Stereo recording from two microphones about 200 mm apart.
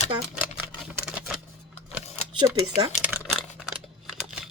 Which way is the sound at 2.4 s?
25° right (ahead or behind).